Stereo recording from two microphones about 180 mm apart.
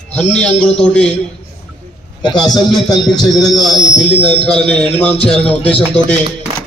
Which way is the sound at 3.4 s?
Centre (ahead or behind).